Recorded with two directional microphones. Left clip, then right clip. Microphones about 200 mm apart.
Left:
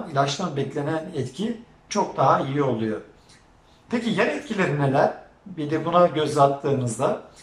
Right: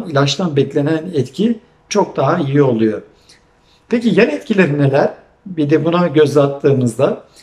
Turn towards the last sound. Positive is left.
turn(degrees=-50)  # may be behind; listen again after turning